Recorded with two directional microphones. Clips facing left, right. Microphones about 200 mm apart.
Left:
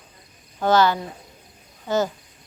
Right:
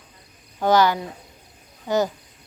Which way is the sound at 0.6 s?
15° right (ahead or behind).